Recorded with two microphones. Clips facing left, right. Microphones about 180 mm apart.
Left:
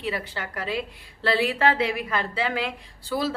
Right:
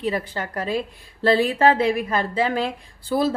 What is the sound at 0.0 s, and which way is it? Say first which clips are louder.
A woman's voice: right 5 dB; 40° right (ahead or behind).